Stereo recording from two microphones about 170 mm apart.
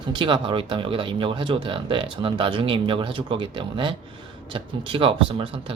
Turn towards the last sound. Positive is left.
turn(degrees=-30)  # may be behind; listen again after turning